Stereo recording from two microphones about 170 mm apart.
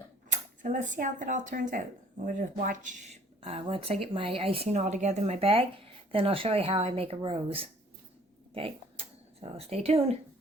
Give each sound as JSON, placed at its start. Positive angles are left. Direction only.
{"t": 0.3, "sound": "speech", "side_deg": -50}